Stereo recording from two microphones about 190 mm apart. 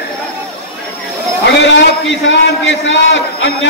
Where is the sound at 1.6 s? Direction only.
70° left (ahead or behind).